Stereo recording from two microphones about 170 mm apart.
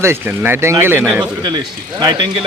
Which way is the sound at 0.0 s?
15° right (ahead or behind).